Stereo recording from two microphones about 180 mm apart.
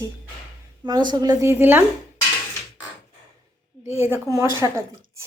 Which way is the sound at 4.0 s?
15° right (ahead or behind).